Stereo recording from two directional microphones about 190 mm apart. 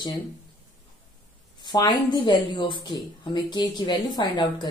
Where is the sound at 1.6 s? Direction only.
25° left (ahead or behind).